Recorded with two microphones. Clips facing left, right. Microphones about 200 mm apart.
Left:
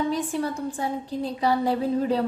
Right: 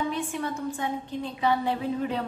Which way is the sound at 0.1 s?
35° left (ahead or behind).